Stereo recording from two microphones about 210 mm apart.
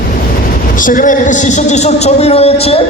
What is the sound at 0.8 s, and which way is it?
A woman's voice, 40° left (ahead or behind).